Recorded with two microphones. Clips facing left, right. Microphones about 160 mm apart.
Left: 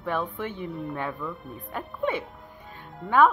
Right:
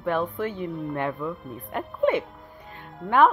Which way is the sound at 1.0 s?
20° right (ahead or behind).